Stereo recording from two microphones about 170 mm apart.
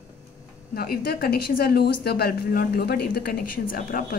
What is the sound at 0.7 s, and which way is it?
A woman's voice, 60° left (ahead or behind).